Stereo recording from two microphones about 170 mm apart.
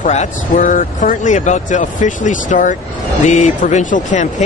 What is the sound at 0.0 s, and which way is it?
Speech, 45° left (ahead or behind).